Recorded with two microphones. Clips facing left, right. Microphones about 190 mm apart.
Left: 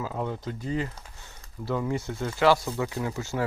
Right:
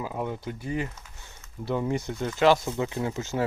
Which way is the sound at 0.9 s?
35° left (ahead or behind).